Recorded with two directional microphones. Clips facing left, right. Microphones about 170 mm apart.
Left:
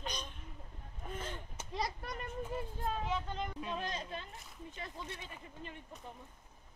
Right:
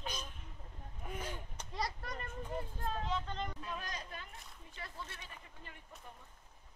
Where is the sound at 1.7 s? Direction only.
15° left (ahead or behind).